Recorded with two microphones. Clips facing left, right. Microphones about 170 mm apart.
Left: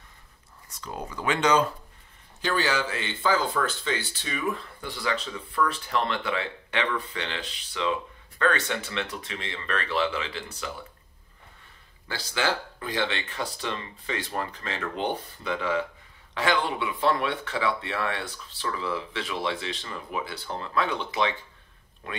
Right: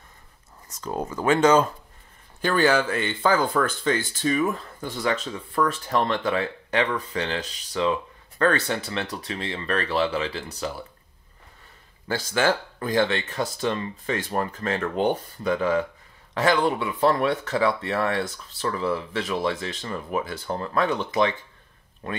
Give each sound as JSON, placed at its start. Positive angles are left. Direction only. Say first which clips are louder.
{"t": 0.7, "sound": "speech", "louder": "right 7 dB", "side_deg": -45}
{"t": 12.1, "sound": "speech", "louder": "right 5 dB", "side_deg": -50}